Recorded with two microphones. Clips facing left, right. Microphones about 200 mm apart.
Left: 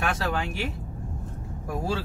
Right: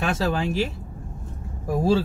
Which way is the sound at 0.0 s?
25° right (ahead or behind).